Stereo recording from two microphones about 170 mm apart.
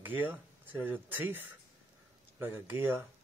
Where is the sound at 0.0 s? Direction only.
10° right (ahead or behind).